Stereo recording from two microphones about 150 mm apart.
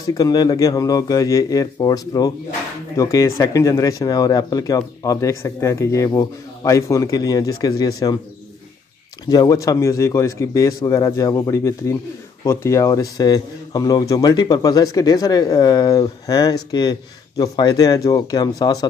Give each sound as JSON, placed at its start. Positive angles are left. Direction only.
{"t": 0.0, "sound": "speech", "side_deg": 25}
{"t": 9.3, "sound": "speech", "side_deg": 25}
{"t": 10.8, "sound": "speech", "side_deg": 35}
{"t": 11.1, "sound": "speech", "side_deg": 20}